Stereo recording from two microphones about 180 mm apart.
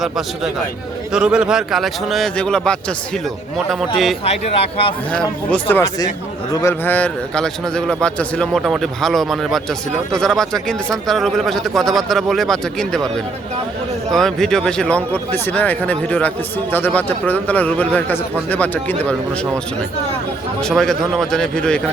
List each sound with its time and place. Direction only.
1.1 s a man's voice: 5° right (ahead or behind)
4.2 s speech: 35° left (ahead or behind)
5.1 s a man's voice: 10° left (ahead or behind)
14.1 s speech: centre (ahead or behind)
20.6 s a man's voice: 5° left (ahead or behind)